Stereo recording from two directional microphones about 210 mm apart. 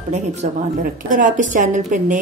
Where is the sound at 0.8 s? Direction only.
40° right (ahead or behind).